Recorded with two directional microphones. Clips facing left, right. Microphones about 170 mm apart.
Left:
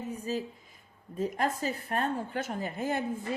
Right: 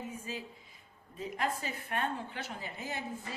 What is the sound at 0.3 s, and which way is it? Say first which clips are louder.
A woman's voice: left 9 dB; 35° left (ahead or behind).